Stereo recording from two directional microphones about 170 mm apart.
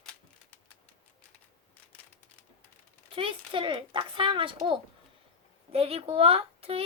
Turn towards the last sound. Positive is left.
turn(degrees=-35)  # may be behind; listen again after turning